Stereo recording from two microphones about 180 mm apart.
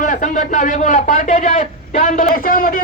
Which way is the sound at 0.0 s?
45° left (ahead or behind).